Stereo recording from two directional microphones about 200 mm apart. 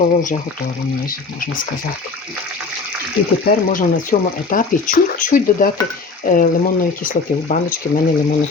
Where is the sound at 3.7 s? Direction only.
40° left (ahead or behind).